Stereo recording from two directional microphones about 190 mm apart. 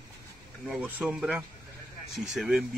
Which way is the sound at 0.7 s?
5° right (ahead or behind).